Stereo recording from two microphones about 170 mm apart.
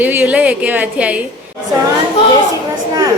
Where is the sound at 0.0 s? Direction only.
10° right (ahead or behind).